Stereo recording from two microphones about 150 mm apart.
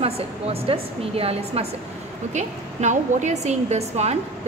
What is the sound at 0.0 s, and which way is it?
A woman's voice, 40° right (ahead or behind).